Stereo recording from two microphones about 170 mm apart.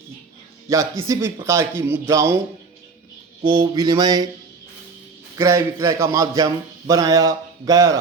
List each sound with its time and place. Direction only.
0.7 s a man's voice: 20° right (ahead or behind)
3.4 s speech: 30° right (ahead or behind)
5.4 s speech: 15° right (ahead or behind)